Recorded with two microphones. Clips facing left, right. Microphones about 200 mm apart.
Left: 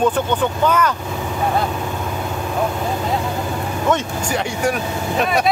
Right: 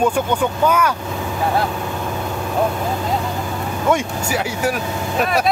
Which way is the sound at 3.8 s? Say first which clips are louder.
Right 1 dB; 10° right (ahead or behind).